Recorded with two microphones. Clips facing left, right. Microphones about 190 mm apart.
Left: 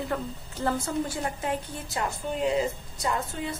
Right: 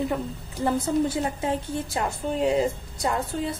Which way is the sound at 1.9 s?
30° right (ahead or behind).